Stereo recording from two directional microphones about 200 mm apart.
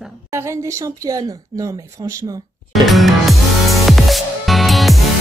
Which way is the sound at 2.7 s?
Centre (ahead or behind).